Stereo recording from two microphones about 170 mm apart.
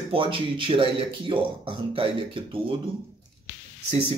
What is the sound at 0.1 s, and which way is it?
Speech, 30° right (ahead or behind).